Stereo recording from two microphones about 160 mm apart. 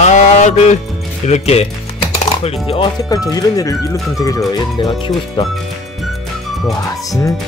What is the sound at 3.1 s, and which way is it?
Speech, 25° left (ahead or behind).